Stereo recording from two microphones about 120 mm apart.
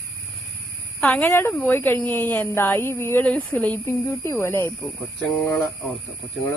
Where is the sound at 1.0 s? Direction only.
15° left (ahead or behind).